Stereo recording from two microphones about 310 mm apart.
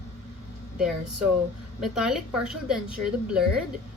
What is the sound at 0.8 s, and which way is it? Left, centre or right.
A woman's voice, centre.